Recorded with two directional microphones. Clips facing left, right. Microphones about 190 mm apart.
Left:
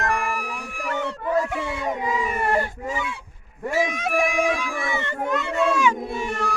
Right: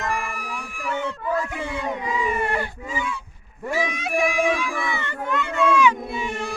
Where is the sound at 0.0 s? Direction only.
70° left (ahead or behind).